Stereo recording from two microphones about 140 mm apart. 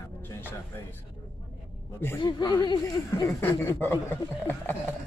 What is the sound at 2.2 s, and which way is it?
Speech, 35° left (ahead or behind).